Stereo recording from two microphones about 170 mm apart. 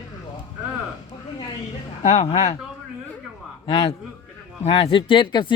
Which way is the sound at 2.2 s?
40° left (ahead or behind).